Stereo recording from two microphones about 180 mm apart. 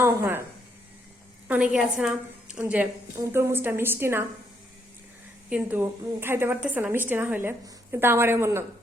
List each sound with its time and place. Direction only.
0.0 s a woman's voice: 15° right (ahead or behind)
1.5 s a woman's voice: 5° right (ahead or behind)
5.5 s a woman's voice: 5° right (ahead or behind)